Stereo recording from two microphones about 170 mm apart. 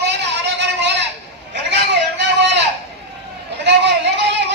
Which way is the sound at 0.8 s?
90° right.